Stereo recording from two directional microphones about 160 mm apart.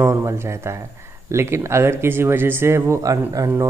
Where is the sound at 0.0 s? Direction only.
15° right (ahead or behind).